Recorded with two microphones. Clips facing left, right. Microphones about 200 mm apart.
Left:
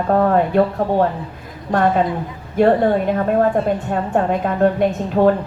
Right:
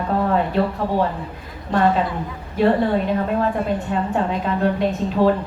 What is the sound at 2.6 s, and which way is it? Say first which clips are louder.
Speech: left 3 dB; 50° left (ahead or behind).